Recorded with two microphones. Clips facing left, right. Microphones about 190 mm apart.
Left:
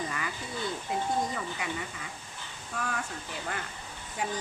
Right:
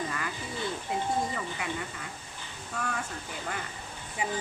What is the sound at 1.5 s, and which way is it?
A woman's voice, centre (ahead or behind).